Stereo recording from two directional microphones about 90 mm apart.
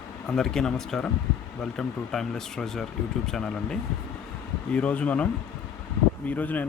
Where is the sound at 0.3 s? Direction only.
5° left (ahead or behind).